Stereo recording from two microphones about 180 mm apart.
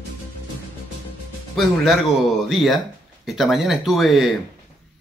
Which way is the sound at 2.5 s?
Centre (ahead or behind).